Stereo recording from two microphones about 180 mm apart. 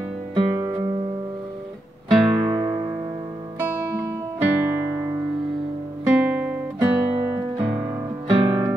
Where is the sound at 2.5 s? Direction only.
20° right (ahead or behind).